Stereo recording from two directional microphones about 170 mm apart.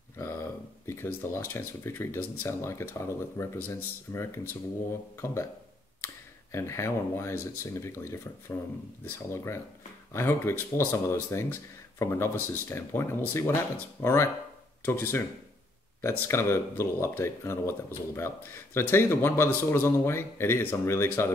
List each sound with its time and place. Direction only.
0.2 s speech: 15° left (ahead or behind)
6.5 s speech: 15° left (ahead or behind)